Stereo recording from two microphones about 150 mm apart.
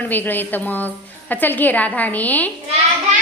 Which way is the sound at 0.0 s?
10° left (ahead or behind).